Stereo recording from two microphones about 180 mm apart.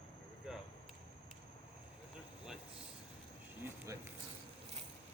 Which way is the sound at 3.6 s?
15° right (ahead or behind).